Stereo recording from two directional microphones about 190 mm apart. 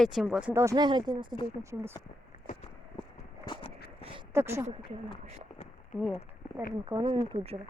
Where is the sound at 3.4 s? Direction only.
25° left (ahead or behind).